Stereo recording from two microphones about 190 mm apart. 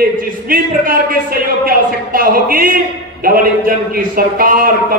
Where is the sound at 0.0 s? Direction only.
50° right (ahead or behind).